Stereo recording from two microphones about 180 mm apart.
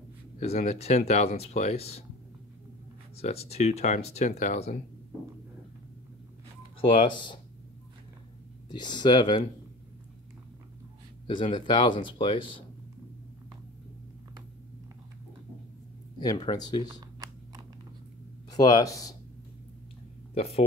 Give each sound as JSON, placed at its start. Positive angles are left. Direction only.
{"t": 0.4, "sound": "speech", "side_deg": 35}
{"t": 3.2, "sound": "speech", "side_deg": 35}
{"t": 6.8, "sound": "speech", "side_deg": 30}
{"t": 8.6, "sound": "speech", "side_deg": 25}
{"t": 11.2, "sound": "speech", "side_deg": 30}
{"t": 16.2, "sound": "speech", "side_deg": 25}
{"t": 18.5, "sound": "speech", "side_deg": 20}